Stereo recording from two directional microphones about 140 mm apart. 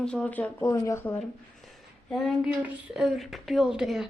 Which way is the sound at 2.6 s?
10° right (ahead or behind).